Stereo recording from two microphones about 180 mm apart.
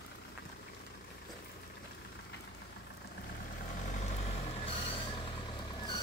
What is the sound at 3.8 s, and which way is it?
Vehicle, 40° left (ahead or behind).